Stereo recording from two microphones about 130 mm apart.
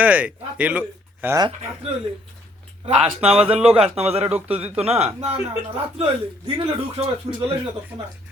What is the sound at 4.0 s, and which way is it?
Speech, 50° right (ahead or behind).